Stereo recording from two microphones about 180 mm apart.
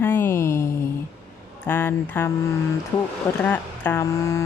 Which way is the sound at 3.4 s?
10° left (ahead or behind).